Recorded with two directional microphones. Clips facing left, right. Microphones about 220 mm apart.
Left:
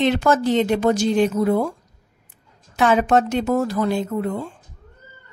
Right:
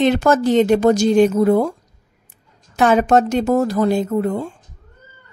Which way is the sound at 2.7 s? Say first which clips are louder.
Right 3 dB; 45° right (ahead or behind).